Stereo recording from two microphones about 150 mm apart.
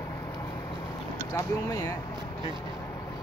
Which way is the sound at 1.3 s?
20° left (ahead or behind).